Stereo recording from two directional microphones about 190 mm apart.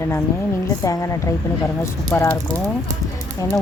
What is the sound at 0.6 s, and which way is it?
Speech, 15° left (ahead or behind).